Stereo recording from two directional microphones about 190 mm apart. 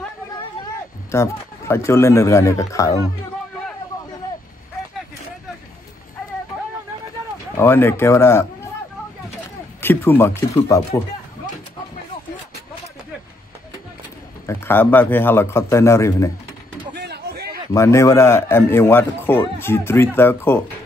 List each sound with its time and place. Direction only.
1.1 s a man's voice: 15° left (ahead or behind)
7.5 s a man's voice: 10° left (ahead or behind)
9.8 s a sound: 10° left (ahead or behind)
10.7 s a man's voice: 15° left (ahead or behind)
14.4 s a man's voice: 15° left (ahead or behind)
16.9 s a sound: 55° right (ahead or behind)
17.7 s a man's voice: 15° left (ahead or behind)